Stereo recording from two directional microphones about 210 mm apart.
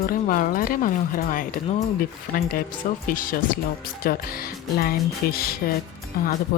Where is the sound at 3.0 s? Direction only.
40° left (ahead or behind).